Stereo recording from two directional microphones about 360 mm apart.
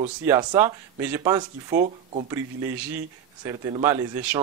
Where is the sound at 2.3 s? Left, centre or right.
Centre.